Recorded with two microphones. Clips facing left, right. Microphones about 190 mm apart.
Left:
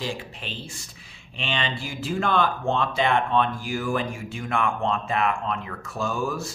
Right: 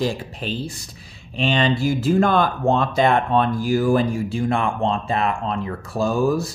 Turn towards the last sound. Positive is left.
turn(degrees=-35)  # may be behind; listen again after turning